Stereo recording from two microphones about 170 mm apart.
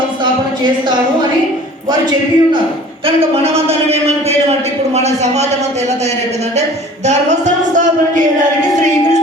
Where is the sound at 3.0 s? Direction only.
35° right (ahead or behind).